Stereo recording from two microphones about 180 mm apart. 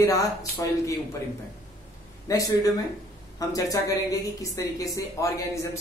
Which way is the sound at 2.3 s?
20° left (ahead or behind).